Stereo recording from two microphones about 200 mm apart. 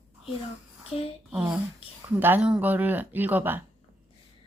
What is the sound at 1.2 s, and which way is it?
Speech, centre (ahead or behind).